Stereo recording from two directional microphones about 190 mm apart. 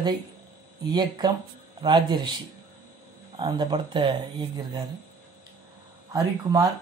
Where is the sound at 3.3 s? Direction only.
25° right (ahead or behind).